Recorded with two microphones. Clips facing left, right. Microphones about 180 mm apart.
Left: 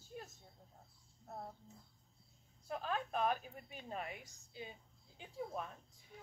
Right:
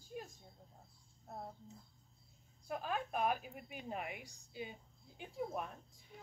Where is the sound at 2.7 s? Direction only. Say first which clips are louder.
Even; 10° right (ahead or behind).